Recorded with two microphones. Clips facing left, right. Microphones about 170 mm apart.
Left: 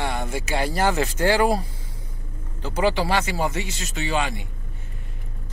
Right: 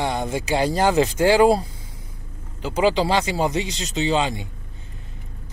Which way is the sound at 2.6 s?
10° right (ahead or behind).